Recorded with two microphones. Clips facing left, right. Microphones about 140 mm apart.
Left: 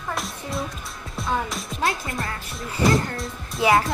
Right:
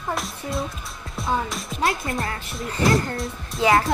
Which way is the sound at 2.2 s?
Centre (ahead or behind).